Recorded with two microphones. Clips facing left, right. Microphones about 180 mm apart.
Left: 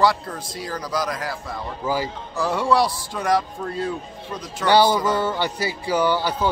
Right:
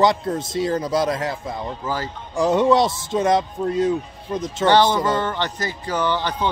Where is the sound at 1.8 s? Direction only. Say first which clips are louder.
Left 3 dB; 10° left (ahead or behind).